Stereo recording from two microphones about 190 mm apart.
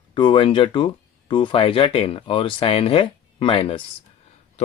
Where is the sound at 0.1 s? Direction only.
25° left (ahead or behind).